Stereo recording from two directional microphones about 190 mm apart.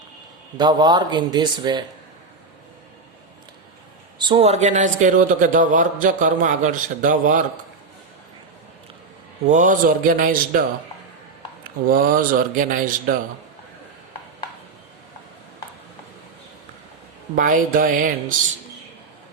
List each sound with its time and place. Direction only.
0.5 s a man's voice: 20° right (ahead or behind)
4.2 s a man's voice: 30° right (ahead or behind); by 7.6 s 45° right (ahead or behind)
9.5 s a man's voice: 45° right (ahead or behind)
11.9 s a man's voice: 45° right (ahead or behind)
17.3 s a man's voice: 45° right (ahead or behind)